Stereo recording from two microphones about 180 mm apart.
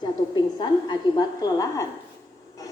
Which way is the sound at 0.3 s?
25° left (ahead or behind).